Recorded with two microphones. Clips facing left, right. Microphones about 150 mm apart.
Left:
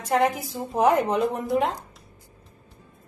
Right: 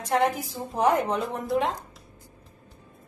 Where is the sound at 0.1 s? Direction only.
5° left (ahead or behind).